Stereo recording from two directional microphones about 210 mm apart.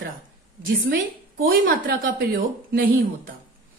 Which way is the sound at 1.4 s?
45° right (ahead or behind).